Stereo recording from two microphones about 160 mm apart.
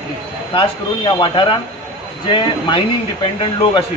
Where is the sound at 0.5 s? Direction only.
30° left (ahead or behind).